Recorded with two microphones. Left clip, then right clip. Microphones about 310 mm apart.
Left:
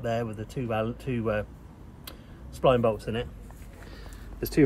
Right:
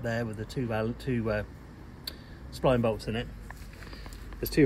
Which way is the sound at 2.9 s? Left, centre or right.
Centre.